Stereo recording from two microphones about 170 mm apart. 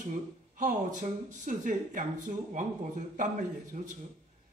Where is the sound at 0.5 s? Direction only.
50° right (ahead or behind).